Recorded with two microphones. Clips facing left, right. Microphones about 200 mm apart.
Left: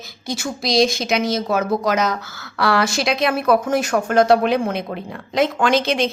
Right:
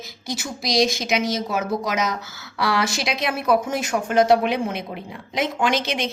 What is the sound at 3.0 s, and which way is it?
Speech, 55° left (ahead or behind).